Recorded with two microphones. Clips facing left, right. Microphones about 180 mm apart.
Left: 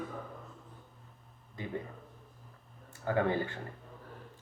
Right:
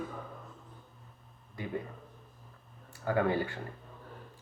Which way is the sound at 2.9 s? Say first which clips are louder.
Right 1 dB; 25° left (ahead or behind).